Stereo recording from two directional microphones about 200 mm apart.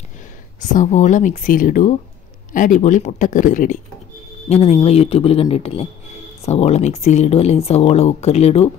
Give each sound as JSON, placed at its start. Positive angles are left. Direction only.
{"t": 0.6, "sound": "speech", "side_deg": 35}